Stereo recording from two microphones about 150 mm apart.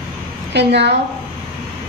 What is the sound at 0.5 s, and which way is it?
Speech, 90° right.